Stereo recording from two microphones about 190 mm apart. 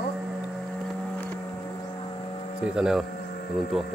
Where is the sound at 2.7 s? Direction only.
Centre (ahead or behind).